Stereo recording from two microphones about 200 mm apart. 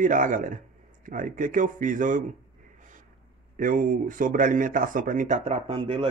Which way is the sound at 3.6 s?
40° right (ahead or behind).